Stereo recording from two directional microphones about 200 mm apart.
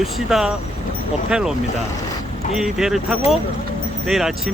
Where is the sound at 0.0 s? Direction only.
Centre (ahead or behind).